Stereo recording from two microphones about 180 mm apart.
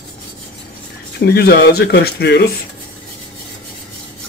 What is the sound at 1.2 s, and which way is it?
Speech, 65° left (ahead or behind).